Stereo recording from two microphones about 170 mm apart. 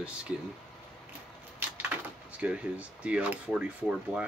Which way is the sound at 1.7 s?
10° right (ahead or behind).